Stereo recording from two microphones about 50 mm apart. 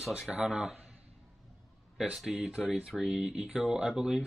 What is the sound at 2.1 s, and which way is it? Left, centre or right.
Speech, centre.